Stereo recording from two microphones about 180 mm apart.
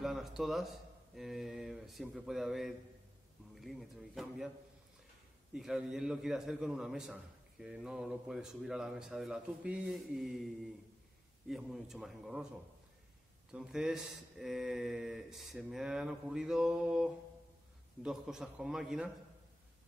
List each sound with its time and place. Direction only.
0.0 s a man's voice: centre (ahead or behind)
5.5 s a man's voice: 5° right (ahead or behind)
13.5 s a man's voice: 5° right (ahead or behind)